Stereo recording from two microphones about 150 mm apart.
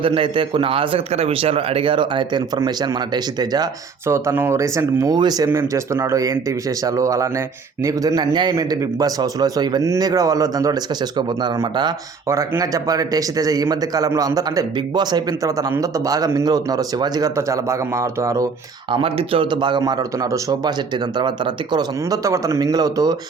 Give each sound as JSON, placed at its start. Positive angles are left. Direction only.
{"t": 0.0, "sound": "a man's voice", "side_deg": -35}
{"t": 18.9, "sound": "a man's voice", "side_deg": -35}